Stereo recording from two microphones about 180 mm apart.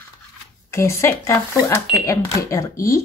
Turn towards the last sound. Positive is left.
turn(degrees=15)  # may be behind; listen again after turning